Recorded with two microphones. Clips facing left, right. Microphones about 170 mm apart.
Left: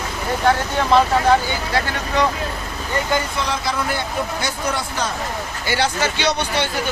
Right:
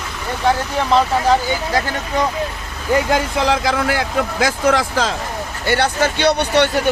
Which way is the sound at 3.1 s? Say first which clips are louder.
Right 5 dB; 90° right.